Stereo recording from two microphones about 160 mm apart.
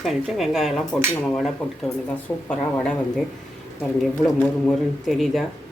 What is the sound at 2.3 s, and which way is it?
Speech, 5° left (ahead or behind).